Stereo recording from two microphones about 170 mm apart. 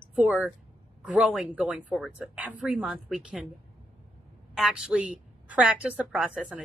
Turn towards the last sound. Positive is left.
turn(degrees=-5)  # may be behind; listen again after turning